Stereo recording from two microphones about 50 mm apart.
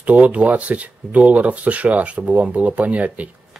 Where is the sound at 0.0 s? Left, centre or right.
Right.